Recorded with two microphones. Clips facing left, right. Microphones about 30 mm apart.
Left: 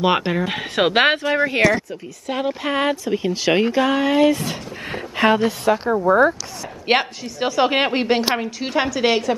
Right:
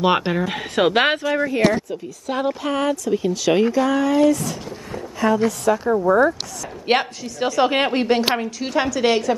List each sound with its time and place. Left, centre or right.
0.0 s speech: centre
0.6 s a woman's voice: centre
1.2 s speech: left
2.2 s a woman's voice: centre
2.6 s speech: left
4.9 s a sound: left
5.9 s a woman's voice: centre
7.0 s a woman's voice: centre